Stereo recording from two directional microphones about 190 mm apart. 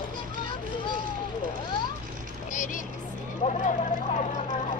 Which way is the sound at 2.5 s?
45° left (ahead or behind).